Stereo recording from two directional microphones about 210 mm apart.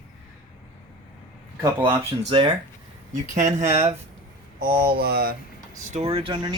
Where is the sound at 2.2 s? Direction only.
25° right (ahead or behind).